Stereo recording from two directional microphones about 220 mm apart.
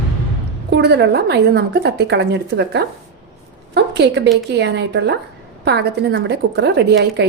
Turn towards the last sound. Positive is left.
turn(degrees=-50)  # may be behind; listen again after turning